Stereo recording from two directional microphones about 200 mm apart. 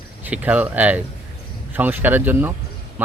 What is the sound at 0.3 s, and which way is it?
Speech, 10° right (ahead or behind).